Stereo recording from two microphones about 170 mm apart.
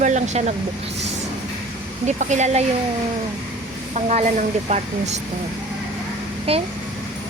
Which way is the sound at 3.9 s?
40° right (ahead or behind).